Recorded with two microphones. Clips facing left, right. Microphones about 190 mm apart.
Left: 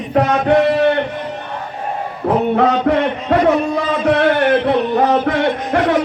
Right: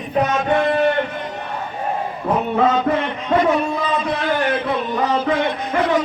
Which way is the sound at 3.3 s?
90° left.